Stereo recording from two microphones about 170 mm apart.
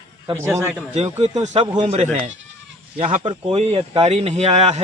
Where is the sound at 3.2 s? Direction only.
35° right (ahead or behind).